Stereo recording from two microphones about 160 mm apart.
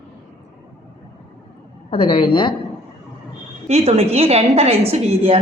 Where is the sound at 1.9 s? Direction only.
35° left (ahead or behind).